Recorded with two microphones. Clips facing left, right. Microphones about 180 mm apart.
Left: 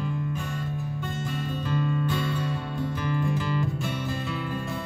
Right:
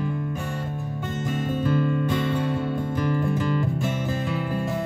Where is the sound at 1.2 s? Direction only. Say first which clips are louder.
Right 9 dB; 50° right (ahead or behind).